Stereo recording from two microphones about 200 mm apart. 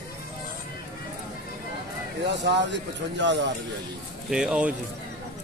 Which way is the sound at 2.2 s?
60° right (ahead or behind).